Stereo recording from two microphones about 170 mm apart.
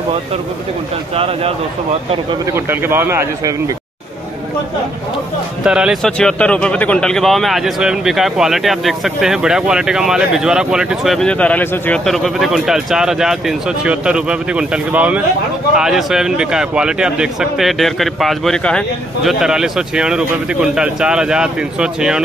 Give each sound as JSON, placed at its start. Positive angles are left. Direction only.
{"t": 1.1, "sound": "speech", "side_deg": -35}
{"t": 2.5, "sound": "speech", "side_deg": -15}
{"t": 5.6, "sound": "speech", "side_deg": -5}